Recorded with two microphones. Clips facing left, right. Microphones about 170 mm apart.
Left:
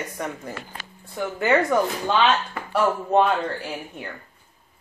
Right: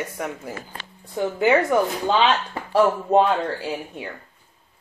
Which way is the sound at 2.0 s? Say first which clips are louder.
Right 1 dB; 25° right (ahead or behind).